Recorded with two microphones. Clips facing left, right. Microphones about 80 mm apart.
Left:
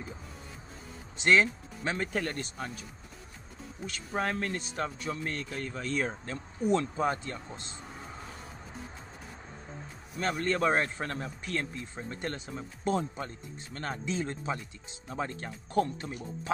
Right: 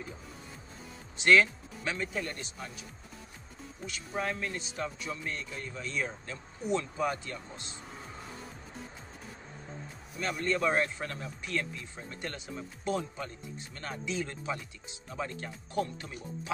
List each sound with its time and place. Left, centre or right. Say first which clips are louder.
1.1 s speech: right 1 dB; left
2.0 s speech: left 3 dB; left
3.8 s speech: left 2 dB; left
7.1 s speech: left 3 dB; left
10.1 s speech: left 2 dB; left